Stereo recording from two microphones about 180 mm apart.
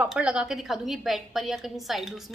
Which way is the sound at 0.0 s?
5° right (ahead or behind).